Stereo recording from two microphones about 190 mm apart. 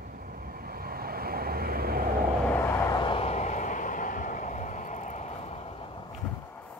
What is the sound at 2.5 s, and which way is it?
Vehicle, 15° left (ahead or behind).